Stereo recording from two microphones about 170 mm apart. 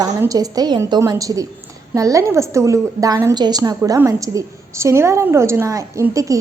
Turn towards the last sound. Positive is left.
turn(degrees=-20)  # may be behind; listen again after turning